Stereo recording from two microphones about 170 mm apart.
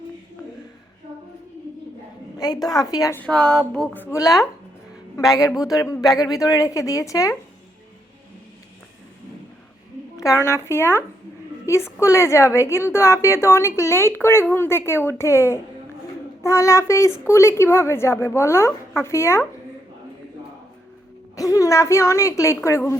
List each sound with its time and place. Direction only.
2.4 s a woman's voice: 20° left (ahead or behind)
10.2 s a woman's voice: 15° left (ahead or behind)
21.3 s a woman's voice: 20° left (ahead or behind)